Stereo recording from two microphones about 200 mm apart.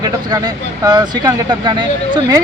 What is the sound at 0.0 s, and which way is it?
Speech, 20° right (ahead or behind).